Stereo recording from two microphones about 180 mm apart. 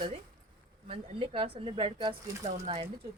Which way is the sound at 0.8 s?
30° right (ahead or behind).